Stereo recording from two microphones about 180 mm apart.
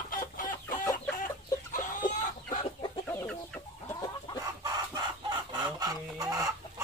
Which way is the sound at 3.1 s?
10° left (ahead or behind).